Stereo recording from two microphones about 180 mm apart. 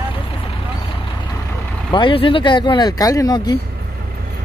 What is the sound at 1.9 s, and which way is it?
Speech, 25° left (ahead or behind).